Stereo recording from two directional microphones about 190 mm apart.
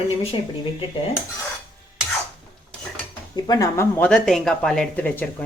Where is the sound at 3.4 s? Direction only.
15° left (ahead or behind).